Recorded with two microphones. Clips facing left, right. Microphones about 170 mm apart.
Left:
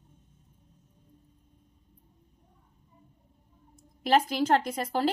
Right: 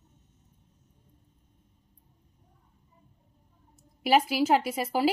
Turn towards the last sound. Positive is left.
turn(degrees=-5)  # may be behind; listen again after turning